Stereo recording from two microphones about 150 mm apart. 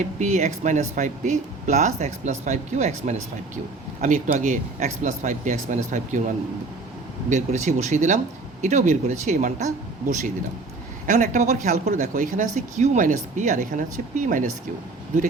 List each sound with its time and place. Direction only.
0.0 s speech: 50° right (ahead or behind)